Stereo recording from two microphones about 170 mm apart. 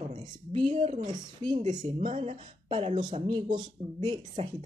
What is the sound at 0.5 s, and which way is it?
Speech, 40° right (ahead or behind).